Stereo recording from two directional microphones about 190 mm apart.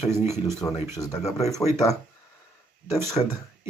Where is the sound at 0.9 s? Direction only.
20° left (ahead or behind).